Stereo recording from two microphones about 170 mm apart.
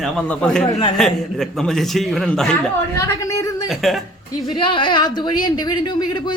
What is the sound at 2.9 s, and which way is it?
Speech, 15° left (ahead or behind).